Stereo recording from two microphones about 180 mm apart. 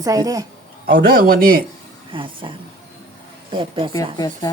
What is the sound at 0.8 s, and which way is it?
Speech, 55° right (ahead or behind).